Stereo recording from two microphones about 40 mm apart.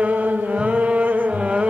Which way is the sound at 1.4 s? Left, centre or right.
Right.